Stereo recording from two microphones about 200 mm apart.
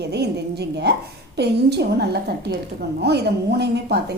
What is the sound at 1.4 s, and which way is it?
A woman's voice, 55° right (ahead or behind).